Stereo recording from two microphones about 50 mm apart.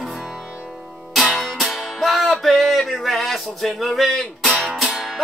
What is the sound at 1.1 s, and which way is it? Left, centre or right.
Music, centre.